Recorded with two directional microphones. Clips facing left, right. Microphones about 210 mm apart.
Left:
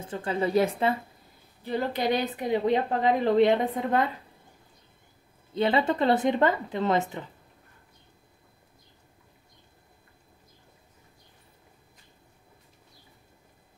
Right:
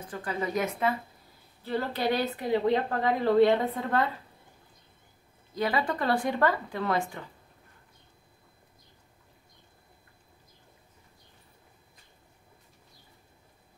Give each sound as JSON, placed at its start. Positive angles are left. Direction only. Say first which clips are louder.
{"t": 0.0, "sound": "speech", "louder": "left 4 dB", "side_deg": 25}
{"t": 1.6, "sound": "a woman's voice", "louder": "left 2 dB", "side_deg": 15}
{"t": 5.5, "sound": "speech", "louder": "left 4 dB", "side_deg": 25}